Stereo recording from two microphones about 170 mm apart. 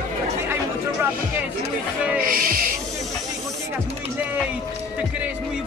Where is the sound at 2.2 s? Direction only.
55° right (ahead or behind).